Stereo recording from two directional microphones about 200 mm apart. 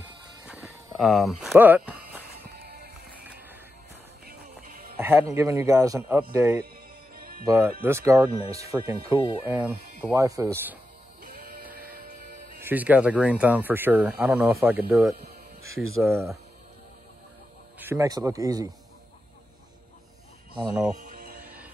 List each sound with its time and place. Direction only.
0.5 s a sound: centre (ahead or behind)
2.4 s music: 50° right (ahead or behind)
4.3 s music: 45° right (ahead or behind)
4.9 s music: 10° right (ahead or behind)
5.3 s speech: 15° right (ahead or behind)
7.2 s music: 45° right (ahead or behind)
7.4 s speech: 10° right (ahead or behind)
11.2 s music: 45° right (ahead or behind)
12.6 s speech: 10° right (ahead or behind)
17.7 s speech: 10° right (ahead or behind)
21.0 s music: 45° right (ahead or behind)